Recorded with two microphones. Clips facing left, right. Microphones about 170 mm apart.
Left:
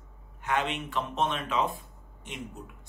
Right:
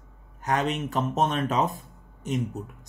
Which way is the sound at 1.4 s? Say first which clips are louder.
Right 4 dB; 40° right (ahead or behind).